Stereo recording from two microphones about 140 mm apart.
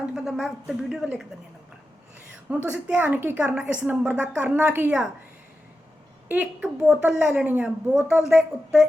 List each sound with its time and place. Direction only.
0.0 s a woman's voice: centre (ahead or behind)
2.6 s a woman's voice: 15° right (ahead or behind)
6.2 s a woman's voice: 10° right (ahead or behind)